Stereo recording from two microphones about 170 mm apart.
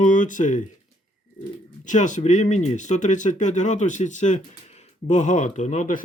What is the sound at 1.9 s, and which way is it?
Speech, 45° left (ahead or behind).